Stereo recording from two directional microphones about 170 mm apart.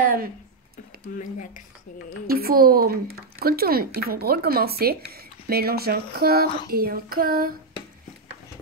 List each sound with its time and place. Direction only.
0.0 s speech: 55° right (ahead or behind)
1.1 s speech: 50° left (ahead or behind)
2.2 s speech: 60° right (ahead or behind)